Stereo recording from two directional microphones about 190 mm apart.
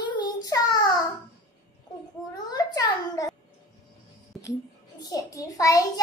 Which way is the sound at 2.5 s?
20° left (ahead or behind).